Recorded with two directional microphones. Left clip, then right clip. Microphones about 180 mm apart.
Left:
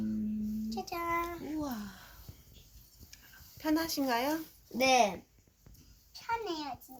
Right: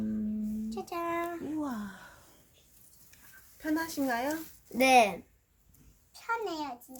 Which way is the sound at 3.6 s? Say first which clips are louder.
Even; 10° left (ahead or behind).